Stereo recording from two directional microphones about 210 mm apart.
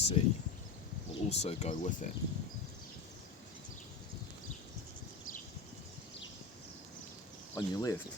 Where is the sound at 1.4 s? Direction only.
30° left (ahead or behind).